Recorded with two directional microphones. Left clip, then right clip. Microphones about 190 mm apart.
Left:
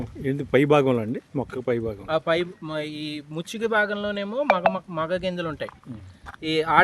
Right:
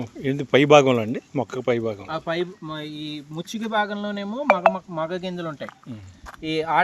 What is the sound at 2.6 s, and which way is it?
Speech, 65° left (ahead or behind).